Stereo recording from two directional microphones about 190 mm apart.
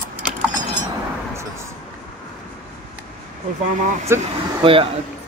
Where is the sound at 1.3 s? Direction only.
15° right (ahead or behind).